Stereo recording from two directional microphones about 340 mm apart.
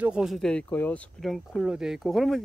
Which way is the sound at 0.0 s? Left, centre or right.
Centre.